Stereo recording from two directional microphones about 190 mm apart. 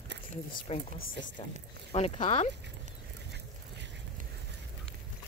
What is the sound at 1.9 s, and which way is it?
Speech, 30° left (ahead or behind).